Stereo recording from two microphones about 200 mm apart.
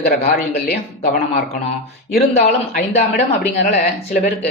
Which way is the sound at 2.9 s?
35° left (ahead or behind).